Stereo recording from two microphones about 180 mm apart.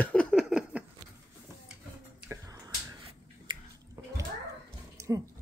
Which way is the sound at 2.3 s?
20° right (ahead or behind).